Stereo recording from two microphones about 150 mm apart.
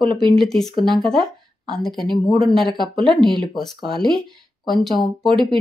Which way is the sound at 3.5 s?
Centre (ahead or behind).